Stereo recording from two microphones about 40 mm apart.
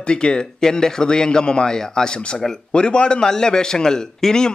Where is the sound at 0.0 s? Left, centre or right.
Left.